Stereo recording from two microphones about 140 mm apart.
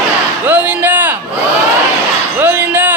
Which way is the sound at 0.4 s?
10° right (ahead or behind).